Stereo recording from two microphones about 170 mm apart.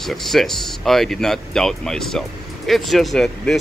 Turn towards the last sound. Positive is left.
turn(degrees=5)  # may be behind; listen again after turning